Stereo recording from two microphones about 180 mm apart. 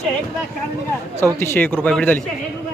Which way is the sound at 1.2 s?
15° left (ahead or behind).